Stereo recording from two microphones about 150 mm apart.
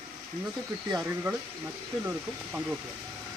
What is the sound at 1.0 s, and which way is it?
Speech, 15° right (ahead or behind).